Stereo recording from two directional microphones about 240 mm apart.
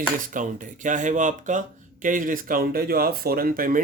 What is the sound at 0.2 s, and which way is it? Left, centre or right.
Speech, right.